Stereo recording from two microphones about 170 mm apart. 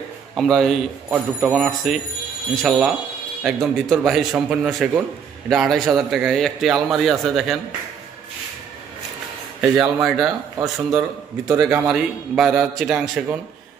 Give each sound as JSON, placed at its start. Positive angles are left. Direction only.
{"t": 0.4, "sound": "a man's voice", "side_deg": 0}
{"t": 10.0, "sound": "a man's voice", "side_deg": 0}
{"t": 11.4, "sound": "a man's voice", "side_deg": -15}
{"t": 11.9, "sound": "a man's voice", "side_deg": -5}